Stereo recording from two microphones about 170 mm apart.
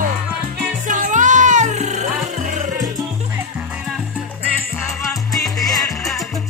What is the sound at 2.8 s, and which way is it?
Salsa music, 20° right (ahead or behind).